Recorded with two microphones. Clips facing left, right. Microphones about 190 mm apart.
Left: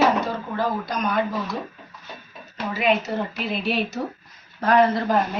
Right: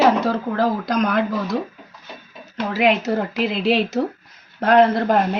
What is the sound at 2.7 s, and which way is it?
Speech, 90° right.